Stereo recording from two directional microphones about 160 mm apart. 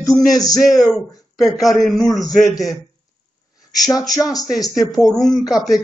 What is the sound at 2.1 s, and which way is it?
Speech, 25° left (ahead or behind).